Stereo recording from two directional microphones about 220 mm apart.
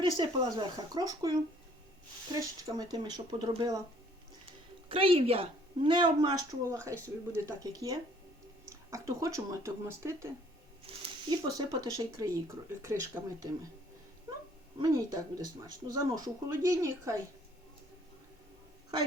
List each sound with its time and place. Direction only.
0.0 s speech: 20° right (ahead or behind)
2.6 s speech: 15° right (ahead or behind)
4.9 s speech: 25° right (ahead or behind)
14.8 s speech: 15° right (ahead or behind)